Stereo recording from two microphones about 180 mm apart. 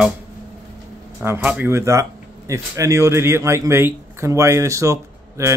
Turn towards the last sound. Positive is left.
turn(degrees=-15)  # may be behind; listen again after turning